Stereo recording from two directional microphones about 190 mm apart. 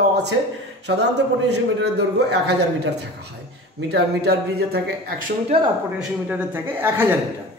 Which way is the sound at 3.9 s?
60° right (ahead or behind).